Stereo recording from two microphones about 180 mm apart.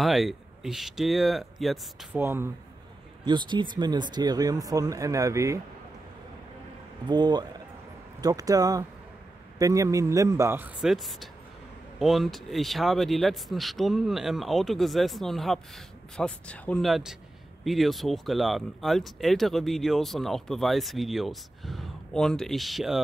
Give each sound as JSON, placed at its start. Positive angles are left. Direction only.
{"t": 0.0, "sound": "speech", "side_deg": 0}
{"t": 2.1, "sound": "a man's voice", "side_deg": -10}
{"t": 3.3, "sound": "speech", "side_deg": -25}
{"t": 7.1, "sound": "a man's voice", "side_deg": -25}